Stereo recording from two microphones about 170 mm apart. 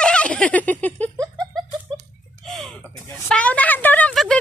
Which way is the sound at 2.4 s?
Centre (ahead or behind).